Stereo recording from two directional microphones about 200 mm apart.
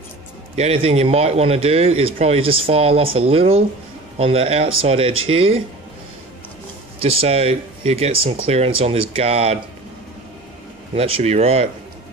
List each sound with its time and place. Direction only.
0.6 s speech: 30° right (ahead or behind)
7.0 s speech: 30° right (ahead or behind)
11.0 s speech: 30° right (ahead or behind)